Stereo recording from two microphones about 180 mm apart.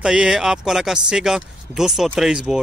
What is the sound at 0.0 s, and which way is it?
Speech, 5° right (ahead or behind).